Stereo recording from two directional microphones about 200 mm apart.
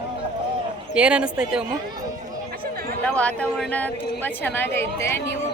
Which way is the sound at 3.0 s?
5° left (ahead or behind).